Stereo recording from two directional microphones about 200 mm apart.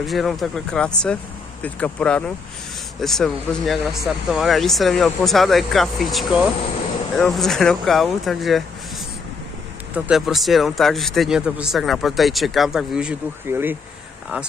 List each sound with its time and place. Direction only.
0.0 s speech: centre (ahead or behind)
9.9 s speech: 5° right (ahead or behind)